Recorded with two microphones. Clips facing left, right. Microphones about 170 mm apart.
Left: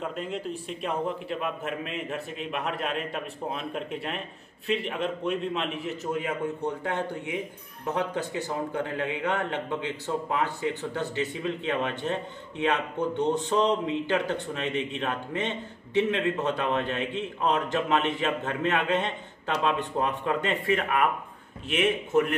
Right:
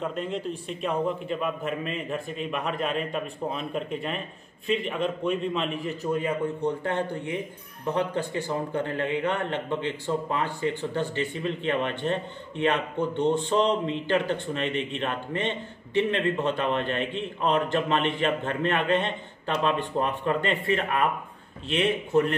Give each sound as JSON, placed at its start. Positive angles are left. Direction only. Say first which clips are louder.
{"t": 0.0, "sound": "a man's voice", "louder": "right 2 dB", "side_deg": 5}